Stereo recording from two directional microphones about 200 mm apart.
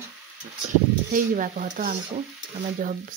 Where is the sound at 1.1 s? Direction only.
40° right (ahead or behind).